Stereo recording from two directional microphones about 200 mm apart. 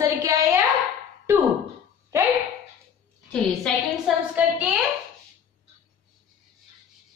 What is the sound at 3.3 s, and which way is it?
Speech, 5° left (ahead or behind).